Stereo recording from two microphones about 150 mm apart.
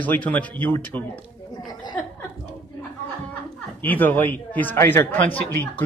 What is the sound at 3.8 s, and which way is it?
A man's voice, 10° left (ahead or behind).